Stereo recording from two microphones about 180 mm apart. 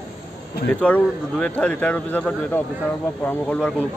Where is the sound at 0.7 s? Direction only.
5° left (ahead or behind).